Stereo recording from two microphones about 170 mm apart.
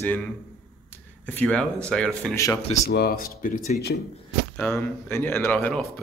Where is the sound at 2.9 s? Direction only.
65° left (ahead or behind).